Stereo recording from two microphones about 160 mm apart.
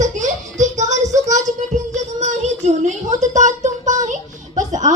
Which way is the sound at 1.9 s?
50° right (ahead or behind).